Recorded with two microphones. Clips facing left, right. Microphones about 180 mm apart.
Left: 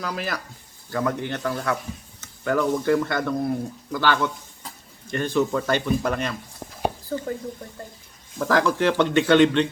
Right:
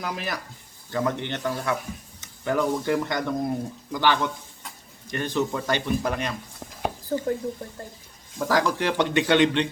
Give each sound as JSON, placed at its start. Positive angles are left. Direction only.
{"t": 0.0, "sound": "speech", "side_deg": -20}
{"t": 8.4, "sound": "speech", "side_deg": -15}